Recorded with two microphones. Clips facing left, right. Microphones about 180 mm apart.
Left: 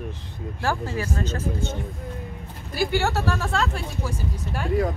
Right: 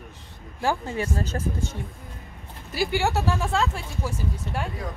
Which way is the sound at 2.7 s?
50° left (ahead or behind).